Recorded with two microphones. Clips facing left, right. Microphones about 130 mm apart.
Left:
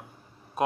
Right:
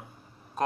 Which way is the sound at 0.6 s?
10° left (ahead or behind).